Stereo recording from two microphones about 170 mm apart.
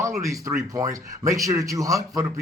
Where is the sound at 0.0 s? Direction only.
20° right (ahead or behind).